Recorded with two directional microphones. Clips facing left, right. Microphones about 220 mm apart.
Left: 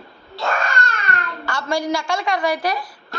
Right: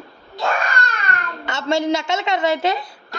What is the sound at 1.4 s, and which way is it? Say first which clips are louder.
A woman's voice: right 3 dB; 25° right (ahead or behind).